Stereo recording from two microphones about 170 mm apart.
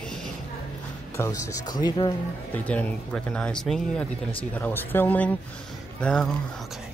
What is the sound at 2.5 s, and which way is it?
Speech, 10° left (ahead or behind).